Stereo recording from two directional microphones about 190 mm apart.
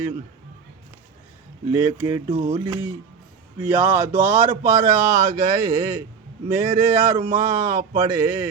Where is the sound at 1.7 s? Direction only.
35° right (ahead or behind).